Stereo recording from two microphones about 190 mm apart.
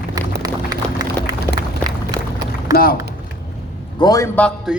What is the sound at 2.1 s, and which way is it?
Run, 20° right (ahead or behind).